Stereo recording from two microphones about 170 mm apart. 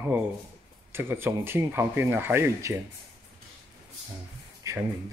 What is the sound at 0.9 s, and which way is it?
Speech, 15° right (ahead or behind).